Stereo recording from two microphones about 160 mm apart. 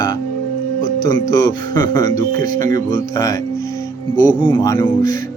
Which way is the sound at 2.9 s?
20° left (ahead or behind).